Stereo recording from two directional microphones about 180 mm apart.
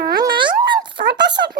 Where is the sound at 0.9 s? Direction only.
75° right (ahead or behind).